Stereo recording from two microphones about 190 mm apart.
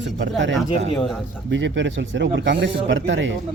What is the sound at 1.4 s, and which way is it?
Speech, 70° right (ahead or behind).